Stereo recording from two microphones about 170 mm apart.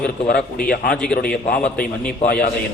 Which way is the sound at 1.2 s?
60° left (ahead or behind).